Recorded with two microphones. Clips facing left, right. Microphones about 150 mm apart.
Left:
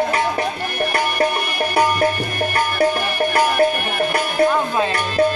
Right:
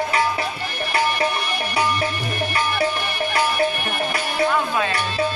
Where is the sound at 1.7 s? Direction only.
50° left (ahead or behind).